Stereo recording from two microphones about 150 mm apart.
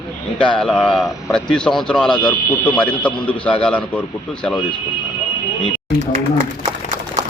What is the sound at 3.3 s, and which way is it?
Speech, 10° left (ahead or behind).